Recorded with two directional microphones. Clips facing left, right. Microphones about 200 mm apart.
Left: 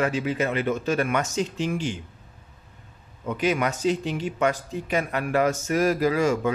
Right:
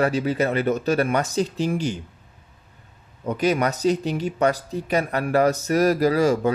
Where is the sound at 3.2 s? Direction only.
40° right (ahead or behind).